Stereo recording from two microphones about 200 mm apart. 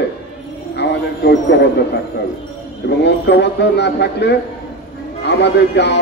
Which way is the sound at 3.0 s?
60° left (ahead or behind).